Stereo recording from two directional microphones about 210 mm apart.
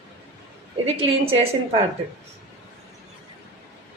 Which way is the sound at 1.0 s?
25° right (ahead or behind).